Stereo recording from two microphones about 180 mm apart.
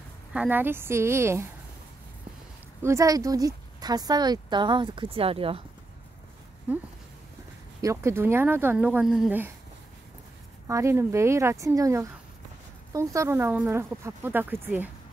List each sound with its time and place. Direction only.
0.3 s speech: 10° right (ahead or behind)
2.8 s speech: 15° right (ahead or behind)
6.7 s speech: 10° right (ahead or behind)
10.7 s speech: 15° right (ahead or behind)